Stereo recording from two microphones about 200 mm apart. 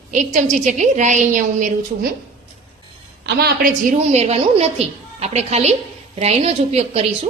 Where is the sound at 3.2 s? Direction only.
55° right (ahead or behind).